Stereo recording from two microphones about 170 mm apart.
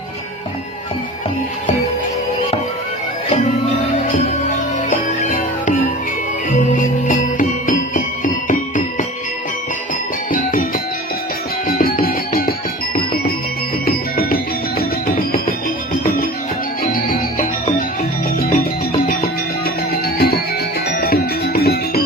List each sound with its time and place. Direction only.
4.9 s music: 45° left (ahead or behind)
10.3 s music: 50° left (ahead or behind)
11.7 s music: 60° left (ahead or behind)
14.3 s music: 60° left (ahead or behind)
19.6 s music: 65° left (ahead or behind)